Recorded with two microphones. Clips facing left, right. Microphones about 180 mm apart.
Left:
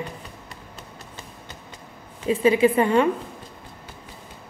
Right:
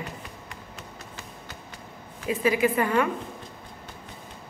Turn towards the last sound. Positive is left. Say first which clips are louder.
# left 5 dB
turn(degrees=25)  # may be behind; listen again after turning